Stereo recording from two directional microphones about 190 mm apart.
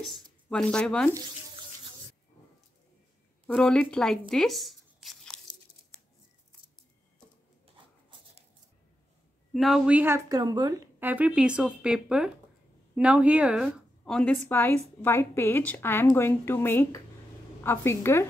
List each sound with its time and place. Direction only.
0.1 s speech: 5° left (ahead or behind)
3.4 s speech: 5° left (ahead or behind)
7.7 s rub: 25° right (ahead or behind)
9.5 s a woman's voice: centre (ahead or behind); by 10.8 s 20° right (ahead or behind)
11.0 s a woman's voice: 10° right (ahead or behind); by 18.2 s 15° left (ahead or behind)